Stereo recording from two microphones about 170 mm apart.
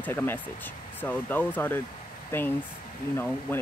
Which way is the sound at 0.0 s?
10° left (ahead or behind).